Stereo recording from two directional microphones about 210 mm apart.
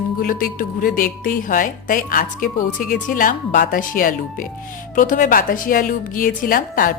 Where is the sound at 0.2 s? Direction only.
40° left (ahead or behind).